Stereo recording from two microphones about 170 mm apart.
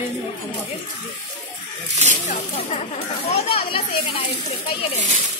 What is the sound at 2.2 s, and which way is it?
A child's voice, 40° left (ahead or behind).